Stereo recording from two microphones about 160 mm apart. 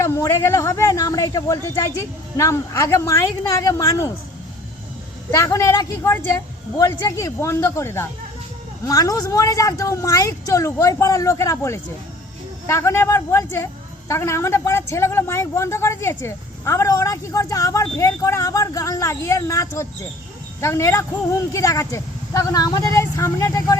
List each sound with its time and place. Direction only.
0.0 s a man's voice: 15° left (ahead or behind)
5.3 s a man's voice: 20° left (ahead or behind)